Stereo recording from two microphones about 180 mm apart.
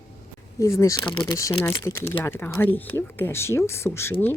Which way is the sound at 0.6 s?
15° left (ahead or behind).